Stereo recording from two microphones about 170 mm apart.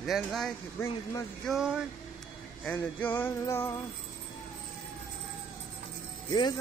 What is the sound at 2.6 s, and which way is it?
Music, 10° left (ahead or behind).